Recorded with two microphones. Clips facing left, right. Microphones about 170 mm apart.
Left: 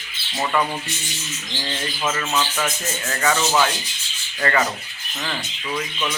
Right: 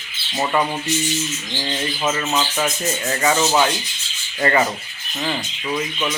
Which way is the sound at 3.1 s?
20° right (ahead or behind).